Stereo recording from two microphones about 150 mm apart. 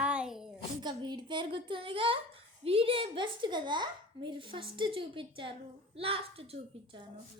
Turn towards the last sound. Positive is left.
turn(degrees=-40)  # may be behind; listen again after turning